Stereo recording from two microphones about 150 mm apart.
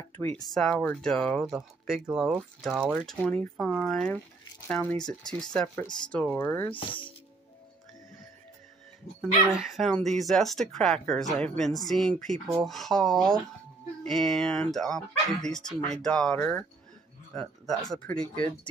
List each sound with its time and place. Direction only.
0.1 s speech: 10° left (ahead or behind)
0.5 s speech: centre (ahead or behind)
2.9 s speech: 5° left (ahead or behind)
6.7 s speech: 35° left (ahead or behind)
9.2 s speech: centre (ahead or behind)
18.2 s speech: 35° left (ahead or behind)